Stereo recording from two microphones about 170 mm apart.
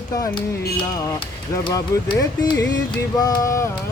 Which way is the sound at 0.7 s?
20° left (ahead or behind).